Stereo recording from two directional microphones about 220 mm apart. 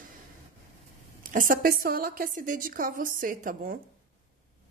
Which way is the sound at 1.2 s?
35° right (ahead or behind).